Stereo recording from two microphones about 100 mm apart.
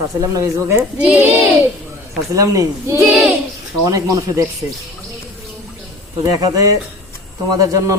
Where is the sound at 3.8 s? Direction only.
35° right (ahead or behind).